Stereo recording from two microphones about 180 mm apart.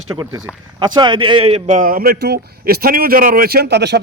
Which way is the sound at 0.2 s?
20° right (ahead or behind).